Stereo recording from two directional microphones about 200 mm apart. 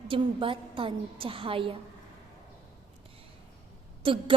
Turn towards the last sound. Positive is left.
turn(degrees=-25)  # may be behind; listen again after turning